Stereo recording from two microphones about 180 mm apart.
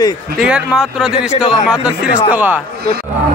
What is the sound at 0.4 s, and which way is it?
Speech, 5° right (ahead or behind).